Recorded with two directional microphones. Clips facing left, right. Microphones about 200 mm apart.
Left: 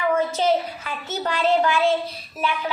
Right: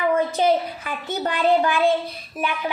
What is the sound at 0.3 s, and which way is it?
A child's voice, 15° right (ahead or behind).